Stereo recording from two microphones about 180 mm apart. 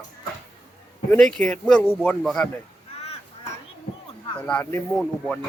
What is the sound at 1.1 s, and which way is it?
A man's voice, 5° left (ahead or behind).